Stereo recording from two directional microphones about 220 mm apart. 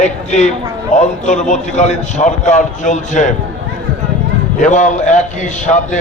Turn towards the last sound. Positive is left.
turn(degrees=35)  # may be behind; listen again after turning